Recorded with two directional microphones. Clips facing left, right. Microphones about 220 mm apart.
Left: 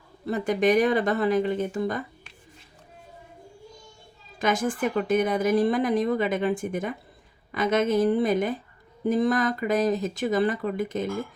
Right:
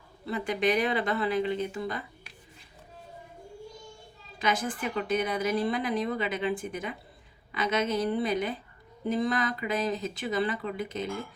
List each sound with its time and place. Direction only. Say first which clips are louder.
0.3 s a woman's voice: left 5 dB; 45° left (ahead or behind)
4.4 s a woman's voice: left 5 dB; 45° left (ahead or behind)